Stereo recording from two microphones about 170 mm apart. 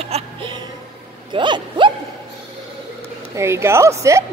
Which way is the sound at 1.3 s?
30° right (ahead or behind).